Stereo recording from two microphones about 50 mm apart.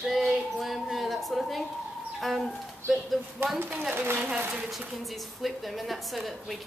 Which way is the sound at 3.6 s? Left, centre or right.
Right.